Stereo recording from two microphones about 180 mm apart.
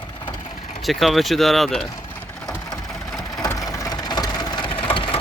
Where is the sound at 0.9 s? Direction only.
Centre (ahead or behind).